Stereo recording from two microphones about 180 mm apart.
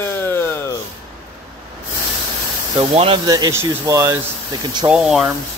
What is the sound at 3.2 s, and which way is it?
Speech, 20° right (ahead or behind).